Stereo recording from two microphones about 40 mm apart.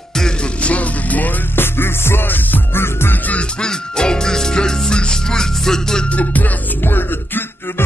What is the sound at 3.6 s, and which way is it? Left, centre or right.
Music, centre.